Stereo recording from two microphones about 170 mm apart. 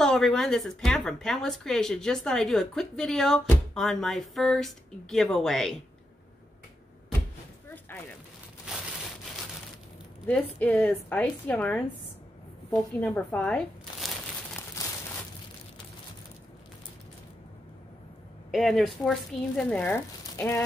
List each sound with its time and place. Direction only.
0.0 s speech: 5° left (ahead or behind)
7.9 s a sound: 10° left (ahead or behind)
8.7 s crushing: 5° right (ahead or behind)
10.2 s a woman's voice: 10° left (ahead or behind)
13.0 s speech: 10° left (ahead or behind)
14.8 s a sound: 20° left (ahead or behind)
18.5 s speech: centre (ahead or behind)